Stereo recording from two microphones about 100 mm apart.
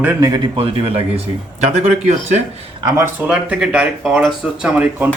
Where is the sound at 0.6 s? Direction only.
75° right (ahead or behind).